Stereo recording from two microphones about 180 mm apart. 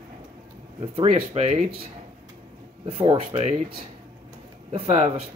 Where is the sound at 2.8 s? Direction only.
30° right (ahead or behind).